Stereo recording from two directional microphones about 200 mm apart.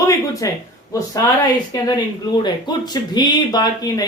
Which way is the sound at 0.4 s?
15° left (ahead or behind).